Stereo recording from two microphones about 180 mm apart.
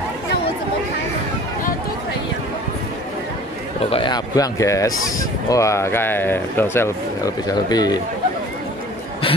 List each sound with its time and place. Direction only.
3.8 s speech: 30° left (ahead or behind)